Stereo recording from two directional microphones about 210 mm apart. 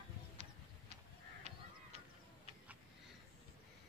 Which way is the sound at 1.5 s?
30° right (ahead or behind).